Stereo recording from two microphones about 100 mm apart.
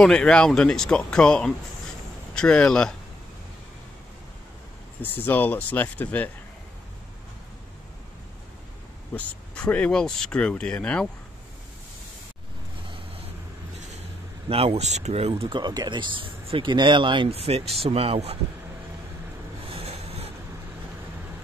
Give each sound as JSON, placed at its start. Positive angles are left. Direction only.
{"t": 0.0, "sound": "speech", "side_deg": 10}
{"t": 5.0, "sound": "speech", "side_deg": 20}
{"t": 9.1, "sound": "speech", "side_deg": 15}
{"t": 14.5, "sound": "speech", "side_deg": -85}
{"t": 17.3, "sound": "speech", "side_deg": -80}
{"t": 19.7, "sound": "vehicle", "side_deg": -80}